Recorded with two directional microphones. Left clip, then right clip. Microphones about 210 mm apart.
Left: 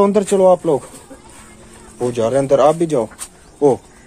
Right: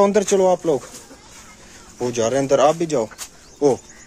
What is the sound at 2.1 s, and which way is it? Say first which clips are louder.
Speech: left 3 dB; 5° right (ahead or behind).